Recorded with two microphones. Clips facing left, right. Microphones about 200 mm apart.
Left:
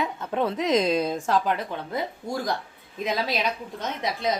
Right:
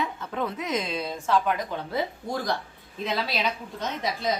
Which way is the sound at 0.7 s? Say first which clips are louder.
Left 7 dB; 40° left (ahead or behind).